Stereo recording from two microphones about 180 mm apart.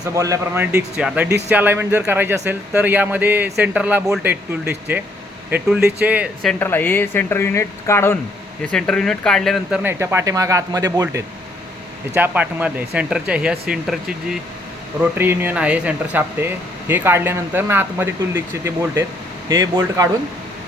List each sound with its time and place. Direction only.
0.0 s speech: 20° right (ahead or behind)
6.5 s speech: 10° left (ahead or behind)
9.8 s speech: 15° right (ahead or behind)